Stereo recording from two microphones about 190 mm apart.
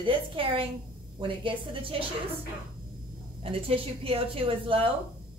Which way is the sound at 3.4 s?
30° right (ahead or behind).